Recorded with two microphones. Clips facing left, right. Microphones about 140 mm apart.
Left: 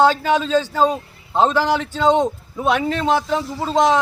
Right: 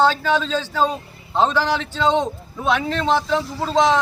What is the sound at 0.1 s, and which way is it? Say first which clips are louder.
Speech: left 3 dB; 50° left (ahead or behind).